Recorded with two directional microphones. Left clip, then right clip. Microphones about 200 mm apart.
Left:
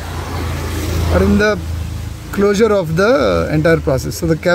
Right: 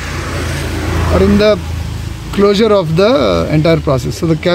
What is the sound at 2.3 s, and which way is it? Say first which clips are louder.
Speech: right 3 dB; 10° left (ahead or behind).